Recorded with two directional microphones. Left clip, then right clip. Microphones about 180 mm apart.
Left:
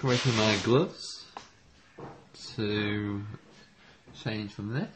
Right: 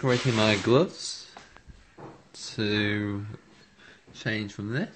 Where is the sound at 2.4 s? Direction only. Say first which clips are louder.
Right 4 dB; 20° right (ahead or behind).